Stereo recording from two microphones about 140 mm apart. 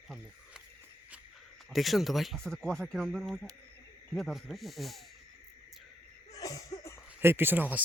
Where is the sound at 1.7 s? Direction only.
Centre (ahead or behind).